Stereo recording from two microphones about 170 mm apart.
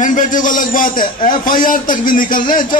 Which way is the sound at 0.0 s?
50° left (ahead or behind).